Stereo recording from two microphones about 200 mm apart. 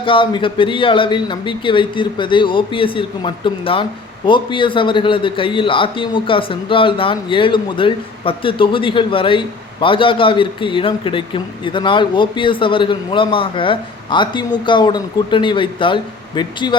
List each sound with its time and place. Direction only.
0.0 s a man's voice: 25° left (ahead or behind)